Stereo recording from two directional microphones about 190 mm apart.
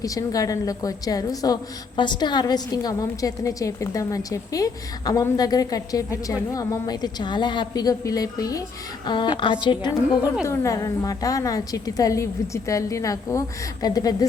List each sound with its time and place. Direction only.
0.0 s a woman's voice: 20° left (ahead or behind)